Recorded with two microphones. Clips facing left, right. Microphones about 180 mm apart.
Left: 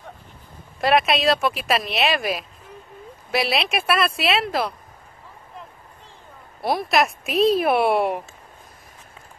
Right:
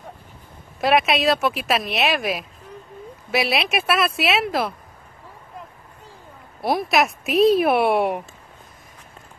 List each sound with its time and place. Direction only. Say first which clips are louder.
0.7 s speech: even; centre (ahead or behind)
6.6 s speech: right 1 dB; centre (ahead or behind)